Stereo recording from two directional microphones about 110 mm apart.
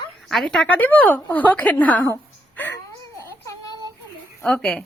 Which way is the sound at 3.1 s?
30° left (ahead or behind).